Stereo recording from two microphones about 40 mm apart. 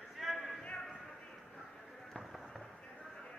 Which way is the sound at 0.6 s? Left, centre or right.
Left.